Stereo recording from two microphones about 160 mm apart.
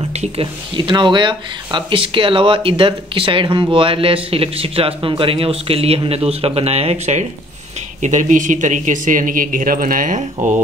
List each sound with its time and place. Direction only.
0.1 s speech: 45° right (ahead or behind)
0.7 s a man's voice: 30° right (ahead or behind); by 10.2 s 55° right (ahead or behind)